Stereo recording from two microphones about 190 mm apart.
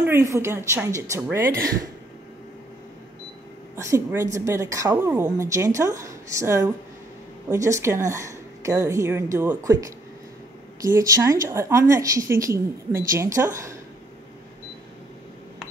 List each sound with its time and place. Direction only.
0.0 s a woman's voice: 15° right (ahead or behind)
3.7 s a woman's voice: 15° right (ahead or behind)